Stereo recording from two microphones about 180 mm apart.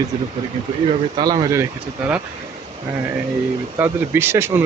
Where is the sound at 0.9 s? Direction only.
20° right (ahead or behind).